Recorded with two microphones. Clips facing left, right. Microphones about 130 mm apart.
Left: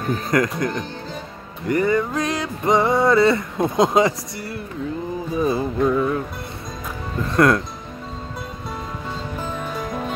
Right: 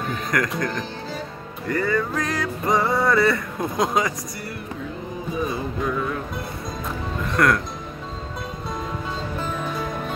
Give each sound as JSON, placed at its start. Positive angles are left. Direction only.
{"t": 0.3, "sound": "music", "side_deg": 25}
{"t": 5.5, "sound": "music", "side_deg": 25}
{"t": 7.3, "sound": "music", "side_deg": 25}